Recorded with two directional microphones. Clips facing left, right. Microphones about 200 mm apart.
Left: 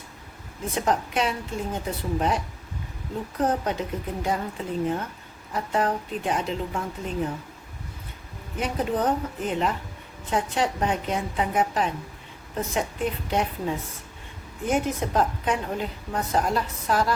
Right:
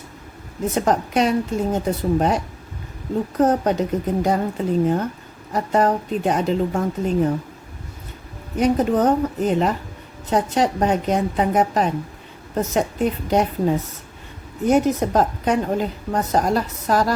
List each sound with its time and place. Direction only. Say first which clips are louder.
0.7 s a woman's voice: right 5 dB; 40° right (ahead or behind)
8.5 s a woman's voice: right 9 dB; 40° right (ahead or behind)